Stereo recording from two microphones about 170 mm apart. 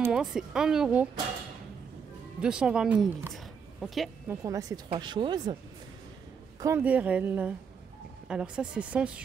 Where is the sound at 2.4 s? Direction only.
5° right (ahead or behind).